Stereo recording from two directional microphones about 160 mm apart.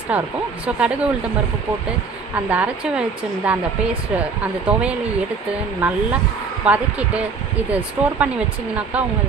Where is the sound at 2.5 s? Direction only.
10° right (ahead or behind).